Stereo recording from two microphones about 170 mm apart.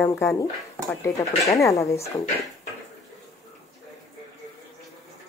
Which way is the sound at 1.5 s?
20° left (ahead or behind).